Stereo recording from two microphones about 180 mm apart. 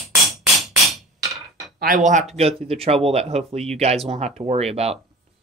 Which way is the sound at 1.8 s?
50° right (ahead or behind).